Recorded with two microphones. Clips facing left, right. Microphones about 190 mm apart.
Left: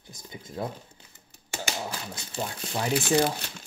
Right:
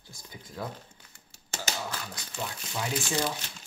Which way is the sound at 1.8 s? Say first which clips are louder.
Left 2 dB; 25° left (ahead or behind).